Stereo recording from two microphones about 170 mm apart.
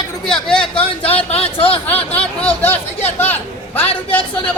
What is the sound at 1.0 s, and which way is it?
Speech, 35° left (ahead or behind).